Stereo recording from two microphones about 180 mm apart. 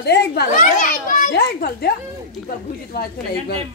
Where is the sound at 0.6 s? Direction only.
45° left (ahead or behind).